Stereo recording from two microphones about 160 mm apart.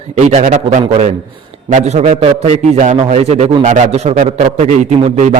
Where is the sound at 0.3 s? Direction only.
45° right (ahead or behind).